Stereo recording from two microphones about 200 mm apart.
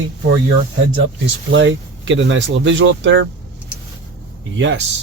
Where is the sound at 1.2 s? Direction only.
65° right (ahead or behind).